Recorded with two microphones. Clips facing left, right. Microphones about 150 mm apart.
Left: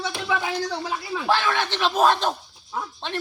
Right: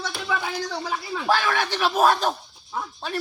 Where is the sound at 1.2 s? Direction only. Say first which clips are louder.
Even; 10° right (ahead or behind).